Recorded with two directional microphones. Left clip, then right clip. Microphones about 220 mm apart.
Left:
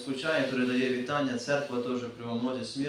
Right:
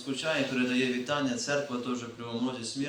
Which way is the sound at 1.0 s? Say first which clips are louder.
Even; 40° right (ahead or behind).